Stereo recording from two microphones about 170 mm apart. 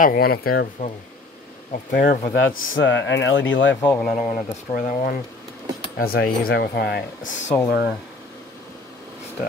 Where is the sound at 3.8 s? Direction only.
10° left (ahead or behind).